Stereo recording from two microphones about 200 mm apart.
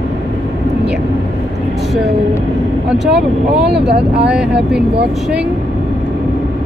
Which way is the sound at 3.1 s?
55° right (ahead or behind).